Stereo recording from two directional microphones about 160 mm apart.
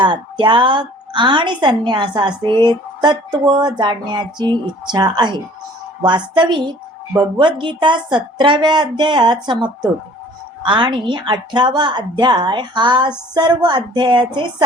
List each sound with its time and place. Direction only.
0.0 s speech: 30° right (ahead or behind)
10.7 s speech: 30° right (ahead or behind)